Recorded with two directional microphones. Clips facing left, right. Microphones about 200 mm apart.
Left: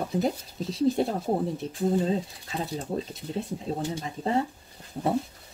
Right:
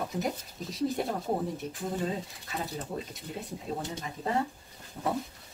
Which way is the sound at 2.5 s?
30° left (ahead or behind).